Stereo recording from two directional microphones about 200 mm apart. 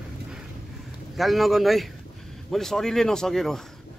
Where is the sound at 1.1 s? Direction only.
Centre (ahead or behind).